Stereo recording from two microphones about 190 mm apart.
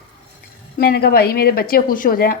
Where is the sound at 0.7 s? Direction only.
55° left (ahead or behind).